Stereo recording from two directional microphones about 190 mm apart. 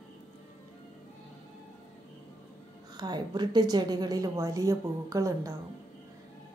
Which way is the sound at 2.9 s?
20° right (ahead or behind).